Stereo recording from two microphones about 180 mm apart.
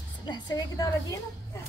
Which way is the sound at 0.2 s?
25° left (ahead or behind).